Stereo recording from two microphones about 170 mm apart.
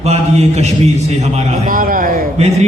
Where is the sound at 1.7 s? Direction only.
55° right (ahead or behind).